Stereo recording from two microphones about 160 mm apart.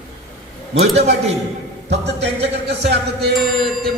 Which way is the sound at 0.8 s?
45° right (ahead or behind).